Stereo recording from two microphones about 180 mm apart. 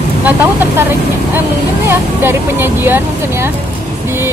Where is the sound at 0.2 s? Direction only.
10° right (ahead or behind).